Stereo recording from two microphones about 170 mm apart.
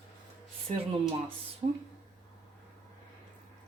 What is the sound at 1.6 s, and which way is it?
Speech, 35° right (ahead or behind).